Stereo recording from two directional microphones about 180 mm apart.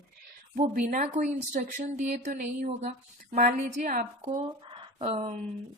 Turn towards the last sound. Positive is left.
turn(degrees=-35)  # may be behind; listen again after turning